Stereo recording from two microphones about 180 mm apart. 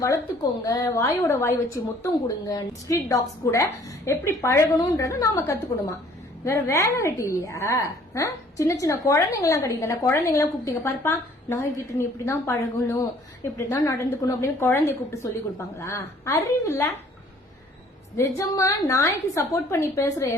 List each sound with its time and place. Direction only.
0.6 s a woman's voice: 20° left (ahead or behind)
18.2 s a woman's voice: 15° left (ahead or behind)